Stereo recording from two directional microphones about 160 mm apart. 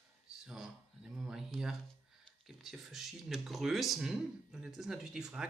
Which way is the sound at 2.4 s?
Centre (ahead or behind).